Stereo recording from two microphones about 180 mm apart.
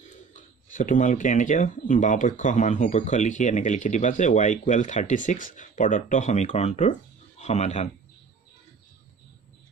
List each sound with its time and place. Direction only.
0.3 s speech: 45° left (ahead or behind)